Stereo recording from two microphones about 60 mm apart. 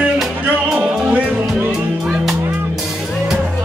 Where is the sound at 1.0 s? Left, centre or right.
Right.